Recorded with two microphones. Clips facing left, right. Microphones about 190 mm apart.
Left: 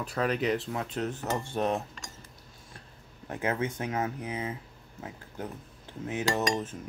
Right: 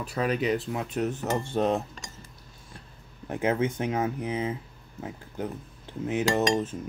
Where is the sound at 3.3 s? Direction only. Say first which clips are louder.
Right 5 dB; 25° right (ahead or behind).